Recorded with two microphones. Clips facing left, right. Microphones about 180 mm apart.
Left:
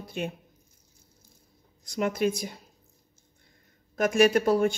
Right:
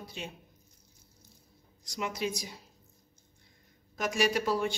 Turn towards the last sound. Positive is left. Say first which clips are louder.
# left 7 dB
turn(degrees=50)  # may be behind; listen again after turning